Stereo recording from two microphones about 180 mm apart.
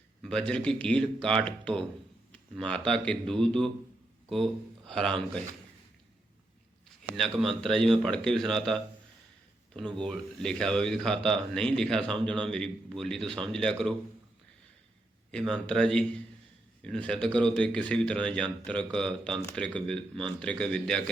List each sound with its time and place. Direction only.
0.2 s speech: 5° left (ahead or behind)
4.9 s speech: 5° left (ahead or behind)
7.2 s speech: centre (ahead or behind)
15.3 s speech: 5° left (ahead or behind)